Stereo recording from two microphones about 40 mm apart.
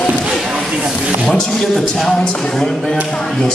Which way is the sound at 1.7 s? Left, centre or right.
Centre.